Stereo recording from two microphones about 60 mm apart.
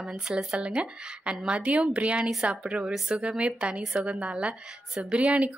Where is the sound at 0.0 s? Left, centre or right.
Centre.